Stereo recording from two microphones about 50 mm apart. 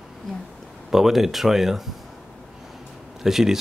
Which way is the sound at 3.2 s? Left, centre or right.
Centre.